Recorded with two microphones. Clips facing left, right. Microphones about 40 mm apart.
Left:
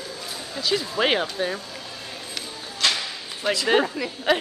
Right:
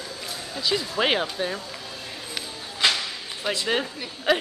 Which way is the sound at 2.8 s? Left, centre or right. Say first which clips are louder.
Right 1 dB; centre.